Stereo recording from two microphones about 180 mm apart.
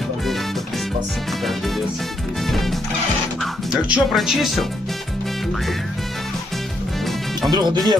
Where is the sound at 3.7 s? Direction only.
Centre (ahead or behind).